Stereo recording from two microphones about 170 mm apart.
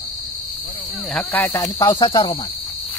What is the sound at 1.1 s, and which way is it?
Cricket, 10° left (ahead or behind).